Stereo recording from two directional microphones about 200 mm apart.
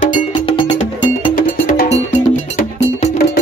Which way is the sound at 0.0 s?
40° left (ahead or behind).